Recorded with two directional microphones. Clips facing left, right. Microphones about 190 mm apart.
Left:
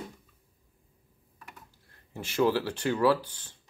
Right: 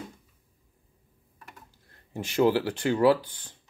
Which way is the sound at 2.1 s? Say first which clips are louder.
Right 3 dB; 20° right (ahead or behind).